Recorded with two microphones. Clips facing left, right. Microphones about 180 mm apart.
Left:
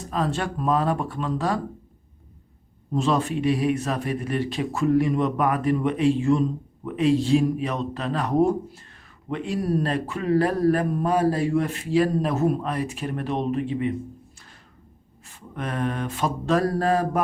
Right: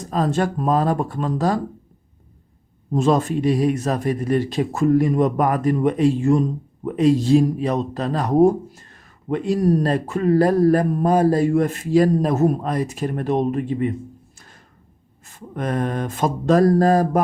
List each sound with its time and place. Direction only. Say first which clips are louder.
0.0 s speech: right 5 dB; 40° right (ahead or behind)
2.9 s speech: right 5 dB; 45° right (ahead or behind)
15.3 s speech: right 6 dB; 45° right (ahead or behind)